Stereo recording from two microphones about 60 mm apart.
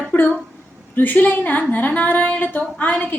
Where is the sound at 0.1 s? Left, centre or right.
Left.